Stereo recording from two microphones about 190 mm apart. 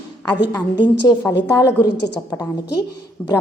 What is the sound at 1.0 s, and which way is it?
A woman's voice, 20° left (ahead or behind).